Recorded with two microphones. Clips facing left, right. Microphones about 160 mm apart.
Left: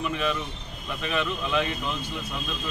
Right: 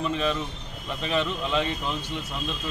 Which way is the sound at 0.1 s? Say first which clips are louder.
Right 1 dB; 25° right (ahead or behind).